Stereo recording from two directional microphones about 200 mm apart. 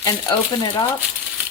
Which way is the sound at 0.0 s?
20° left (ahead or behind).